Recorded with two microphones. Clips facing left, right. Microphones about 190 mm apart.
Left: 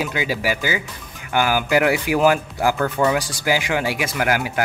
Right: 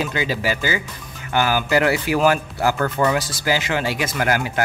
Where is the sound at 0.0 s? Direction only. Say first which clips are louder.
Even; 10° left (ahead or behind).